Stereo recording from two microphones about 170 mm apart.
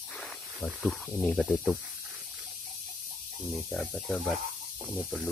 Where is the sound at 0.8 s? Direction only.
Centre (ahead or behind).